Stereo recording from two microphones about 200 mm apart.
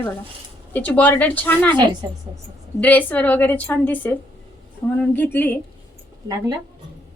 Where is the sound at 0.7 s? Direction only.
10° left (ahead or behind).